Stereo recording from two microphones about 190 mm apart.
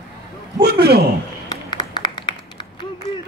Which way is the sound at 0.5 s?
55° right (ahead or behind).